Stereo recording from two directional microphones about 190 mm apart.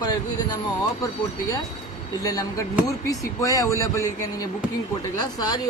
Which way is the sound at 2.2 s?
20° left (ahead or behind).